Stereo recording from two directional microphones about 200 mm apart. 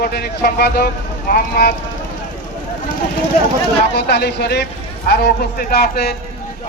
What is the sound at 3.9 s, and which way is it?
A man's voice, 55° left (ahead or behind).